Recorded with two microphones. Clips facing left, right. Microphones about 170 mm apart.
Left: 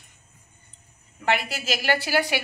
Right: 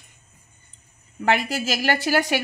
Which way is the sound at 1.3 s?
45° right (ahead or behind).